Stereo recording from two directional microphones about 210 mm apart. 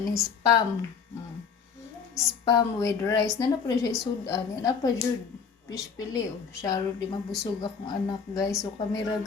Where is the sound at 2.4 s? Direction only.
15° left (ahead or behind).